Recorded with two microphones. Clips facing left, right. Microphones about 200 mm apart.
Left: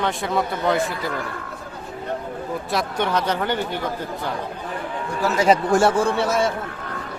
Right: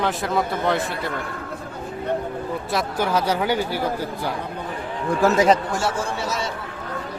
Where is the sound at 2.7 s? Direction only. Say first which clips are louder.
Even; 5° right (ahead or behind).